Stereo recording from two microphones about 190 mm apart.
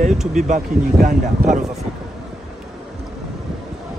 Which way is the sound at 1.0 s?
40° right (ahead or behind).